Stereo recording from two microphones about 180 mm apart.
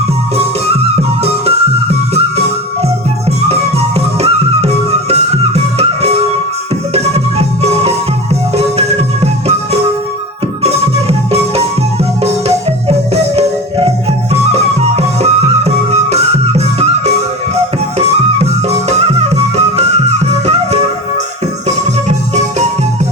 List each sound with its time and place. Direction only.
1.2 s music: 35° right (ahead or behind)
3.5 s music: 35° right (ahead or behind)
6.9 s music: 35° right (ahead or behind)
12.2 s music: 35° right (ahead or behind)
22.4 s music: 40° right (ahead or behind)